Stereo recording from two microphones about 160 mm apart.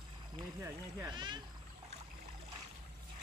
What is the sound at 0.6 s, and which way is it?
Speech, 20° right (ahead or behind).